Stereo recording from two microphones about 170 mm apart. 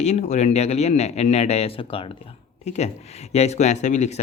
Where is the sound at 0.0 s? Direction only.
40° left (ahead or behind).